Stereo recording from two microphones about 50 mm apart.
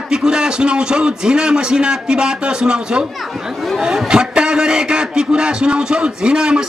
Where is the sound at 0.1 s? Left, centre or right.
Centre.